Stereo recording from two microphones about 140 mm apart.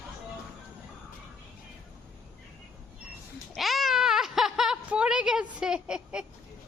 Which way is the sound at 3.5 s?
Centre (ahead or behind).